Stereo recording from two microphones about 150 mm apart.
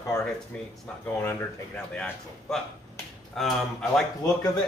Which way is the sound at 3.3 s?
5° left (ahead or behind).